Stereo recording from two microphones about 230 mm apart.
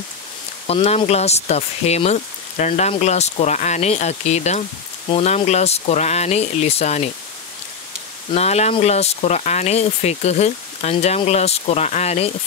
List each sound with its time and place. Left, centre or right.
0.7 s speech: left
8.3 s speech: left